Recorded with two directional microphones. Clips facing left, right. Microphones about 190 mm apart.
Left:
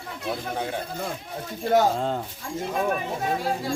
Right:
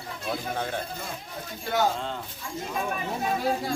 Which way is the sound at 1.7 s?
45° left (ahead or behind).